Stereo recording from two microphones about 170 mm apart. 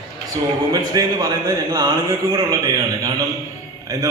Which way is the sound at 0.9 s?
20° right (ahead or behind).